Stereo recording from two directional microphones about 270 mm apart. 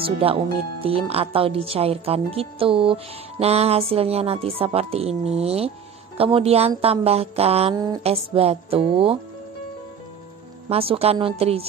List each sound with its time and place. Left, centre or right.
0.0 s speech: centre
10.7 s speech: right